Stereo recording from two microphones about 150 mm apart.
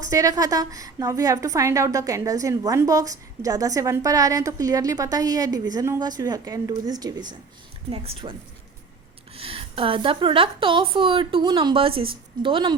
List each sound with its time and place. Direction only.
0.0 s a woman's voice: 25° right (ahead or behind)
7.9 s a woman's voice: 40° right (ahead or behind)